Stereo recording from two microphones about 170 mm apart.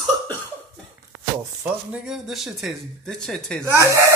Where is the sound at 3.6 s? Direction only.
20° right (ahead or behind).